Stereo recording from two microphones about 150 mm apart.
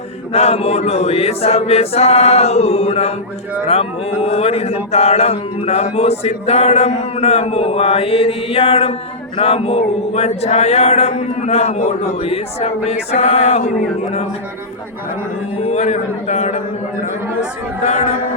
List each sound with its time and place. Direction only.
0.3 s a man's voice: 45° left (ahead or behind)
15.6 s a man's voice: 50° left (ahead or behind)